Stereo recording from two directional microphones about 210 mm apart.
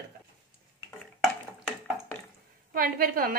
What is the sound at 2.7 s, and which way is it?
Speech, 45° right (ahead or behind).